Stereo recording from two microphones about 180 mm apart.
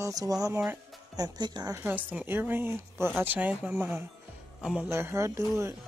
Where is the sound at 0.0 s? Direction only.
20° right (ahead or behind); by 4.8 s 5° right (ahead or behind).